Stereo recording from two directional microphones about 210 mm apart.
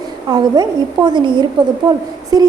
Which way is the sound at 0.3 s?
20° right (ahead or behind).